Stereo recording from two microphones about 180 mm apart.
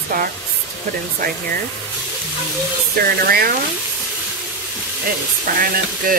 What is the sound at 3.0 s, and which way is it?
Speech, 55° right (ahead or behind).